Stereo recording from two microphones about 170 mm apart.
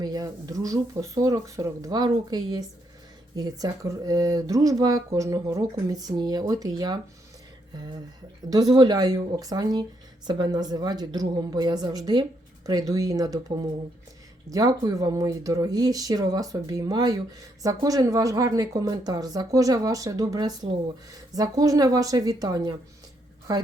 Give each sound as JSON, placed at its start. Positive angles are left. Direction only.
{"t": 0.0, "sound": "speech", "side_deg": -20}
{"t": 8.7, "sound": "speech", "side_deg": -25}